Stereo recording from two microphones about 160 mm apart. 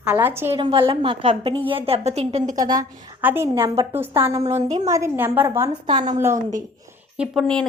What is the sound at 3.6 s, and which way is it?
Speech, 25° right (ahead or behind).